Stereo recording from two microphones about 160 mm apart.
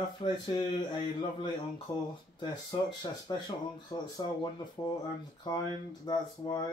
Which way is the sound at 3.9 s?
25° left (ahead or behind).